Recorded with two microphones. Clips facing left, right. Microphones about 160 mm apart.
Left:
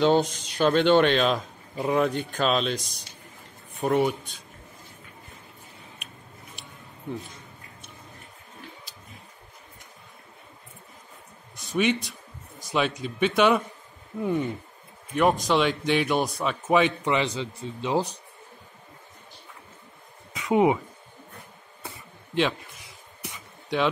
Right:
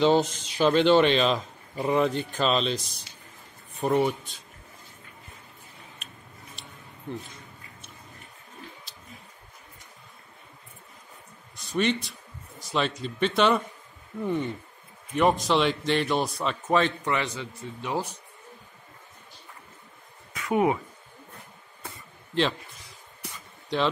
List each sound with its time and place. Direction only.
0.0 s a man's voice: centre (ahead or behind)
11.7 s a man's voice: 5° left (ahead or behind); by 18.0 s 25° left (ahead or behind)
20.3 s speech: 20° left (ahead or behind)